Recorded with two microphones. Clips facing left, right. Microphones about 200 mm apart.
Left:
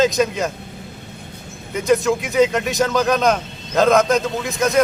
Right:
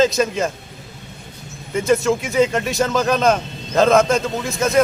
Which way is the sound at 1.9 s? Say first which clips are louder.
Left 1 dB; centre (ahead or behind).